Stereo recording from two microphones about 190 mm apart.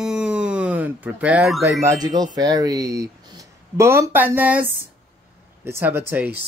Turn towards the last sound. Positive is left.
turn(degrees=-10)  # may be behind; listen again after turning